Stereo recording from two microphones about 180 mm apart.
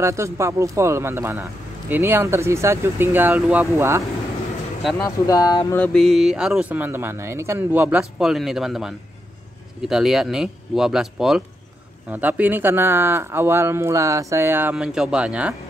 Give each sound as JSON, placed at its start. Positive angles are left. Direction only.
{"t": 0.0, "sound": "speech", "side_deg": -15}
{"t": 5.0, "sound": "speech", "side_deg": 20}
{"t": 5.8, "sound": "speech", "side_deg": 0}